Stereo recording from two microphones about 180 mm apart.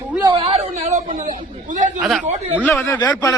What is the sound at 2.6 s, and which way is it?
Speech, 10° left (ahead or behind).